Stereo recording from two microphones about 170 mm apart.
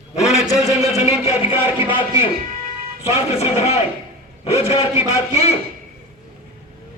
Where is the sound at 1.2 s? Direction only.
30° left (ahead or behind).